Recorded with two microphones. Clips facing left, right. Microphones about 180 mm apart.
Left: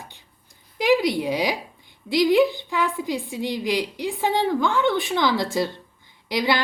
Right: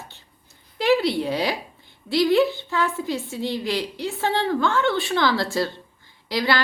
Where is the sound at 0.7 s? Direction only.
15° left (ahead or behind).